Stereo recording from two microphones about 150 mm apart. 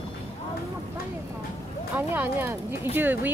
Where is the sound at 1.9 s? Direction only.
15° right (ahead or behind).